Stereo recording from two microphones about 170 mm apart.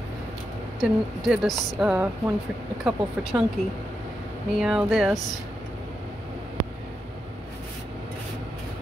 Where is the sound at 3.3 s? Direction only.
15° right (ahead or behind).